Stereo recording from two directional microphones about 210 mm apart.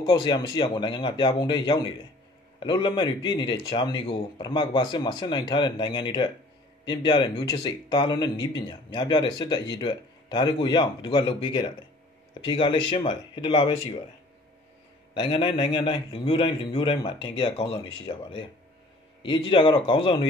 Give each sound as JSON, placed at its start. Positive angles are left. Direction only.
{"t": 0.0, "sound": "speech", "side_deg": 20}
{"t": 15.1, "sound": "speech", "side_deg": 20}